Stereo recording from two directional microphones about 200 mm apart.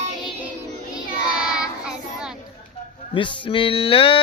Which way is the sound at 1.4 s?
5° right (ahead or behind).